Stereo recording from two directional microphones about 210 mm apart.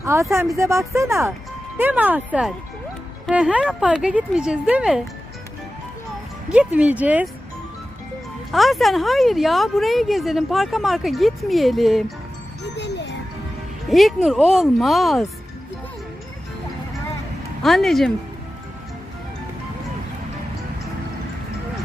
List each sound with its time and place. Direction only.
0.0 s speech: 15° right (ahead or behind)
6.5 s speech: 5° right (ahead or behind)
8.5 s speech: centre (ahead or behind)
12.7 s music: 55° left (ahead or behind)
13.9 s speech: centre (ahead or behind)
17.6 s speech: centre (ahead or behind)